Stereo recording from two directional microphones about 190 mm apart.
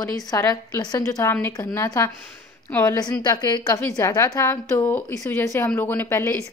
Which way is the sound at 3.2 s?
20° left (ahead or behind).